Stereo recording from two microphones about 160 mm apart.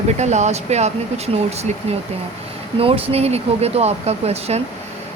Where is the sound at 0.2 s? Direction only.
45° right (ahead or behind).